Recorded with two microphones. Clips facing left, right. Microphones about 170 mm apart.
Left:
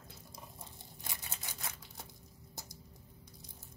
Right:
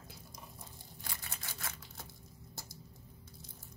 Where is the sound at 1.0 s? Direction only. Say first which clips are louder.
Even; 20° left (ahead or behind).